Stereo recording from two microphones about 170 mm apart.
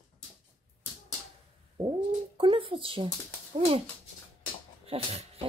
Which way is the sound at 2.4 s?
30° right (ahead or behind).